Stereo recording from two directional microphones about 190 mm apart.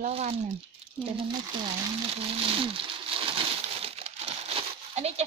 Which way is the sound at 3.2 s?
30° right (ahead or behind).